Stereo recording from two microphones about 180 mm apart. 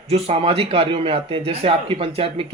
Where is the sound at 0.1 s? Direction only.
35° right (ahead or behind).